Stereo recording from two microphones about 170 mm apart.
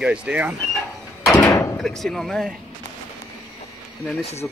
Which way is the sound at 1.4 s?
15° left (ahead or behind).